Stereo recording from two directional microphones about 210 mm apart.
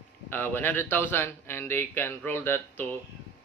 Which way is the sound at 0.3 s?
10° left (ahead or behind).